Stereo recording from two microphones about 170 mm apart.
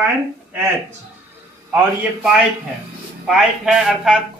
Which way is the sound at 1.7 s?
10° right (ahead or behind).